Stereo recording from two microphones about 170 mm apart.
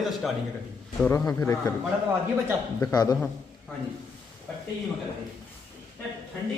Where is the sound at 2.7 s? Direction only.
20° left (ahead or behind).